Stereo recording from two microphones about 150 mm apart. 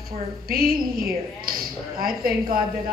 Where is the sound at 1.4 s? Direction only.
75° right (ahead or behind).